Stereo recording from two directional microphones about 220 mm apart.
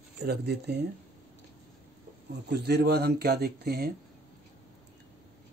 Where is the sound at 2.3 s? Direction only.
50° right (ahead or behind).